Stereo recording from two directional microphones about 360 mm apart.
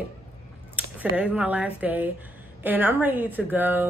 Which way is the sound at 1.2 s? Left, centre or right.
Centre.